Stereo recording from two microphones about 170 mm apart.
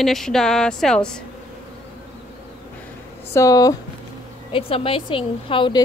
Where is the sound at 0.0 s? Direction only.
Centre (ahead or behind).